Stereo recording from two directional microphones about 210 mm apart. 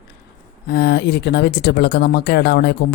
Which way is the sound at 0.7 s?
50° left (ahead or behind).